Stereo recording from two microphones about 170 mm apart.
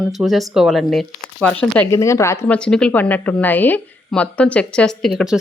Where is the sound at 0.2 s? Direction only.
Centre (ahead or behind).